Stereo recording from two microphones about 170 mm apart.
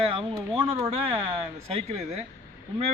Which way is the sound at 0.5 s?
30° right (ahead or behind).